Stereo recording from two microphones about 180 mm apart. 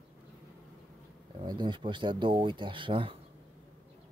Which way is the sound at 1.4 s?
25° right (ahead or behind).